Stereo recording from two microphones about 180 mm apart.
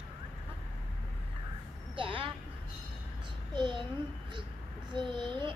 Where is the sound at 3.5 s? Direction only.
25° right (ahead or behind).